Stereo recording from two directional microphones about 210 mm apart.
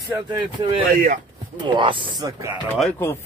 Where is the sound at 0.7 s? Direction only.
35° right (ahead or behind).